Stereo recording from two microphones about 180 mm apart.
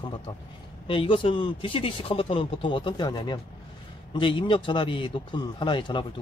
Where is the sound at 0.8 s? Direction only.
30° left (ahead or behind).